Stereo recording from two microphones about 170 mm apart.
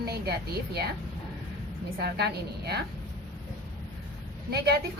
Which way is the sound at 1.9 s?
70° right (ahead or behind).